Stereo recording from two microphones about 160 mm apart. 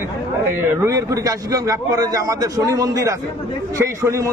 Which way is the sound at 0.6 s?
15° right (ahead or behind).